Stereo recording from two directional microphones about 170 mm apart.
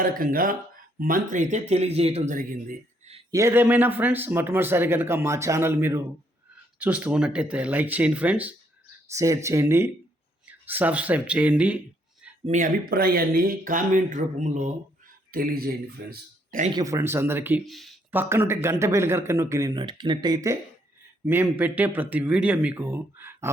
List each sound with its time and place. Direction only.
0.0 s speech: 55° right (ahead or behind)
3.3 s a man's voice: 15° right (ahead or behind)
12.5 s speech: 50° right (ahead or behind)
15.3 s speech: 60° right (ahead or behind)
16.7 s a man's voice: 20° right (ahead or behind)
17.7 s speech: centre (ahead or behind)
18.1 s a man's voice: 15° right (ahead or behind)
21.2 s a man's voice: 10° right (ahead or behind)